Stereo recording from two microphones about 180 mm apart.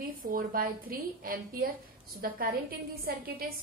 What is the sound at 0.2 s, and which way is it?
A woman's voice, 50° right (ahead or behind).